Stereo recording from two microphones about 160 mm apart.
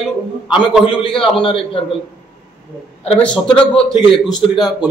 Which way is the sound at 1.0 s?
35° left (ahead or behind).